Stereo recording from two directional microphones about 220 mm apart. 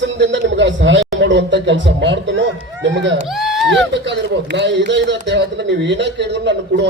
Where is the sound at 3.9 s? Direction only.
55° right (ahead or behind).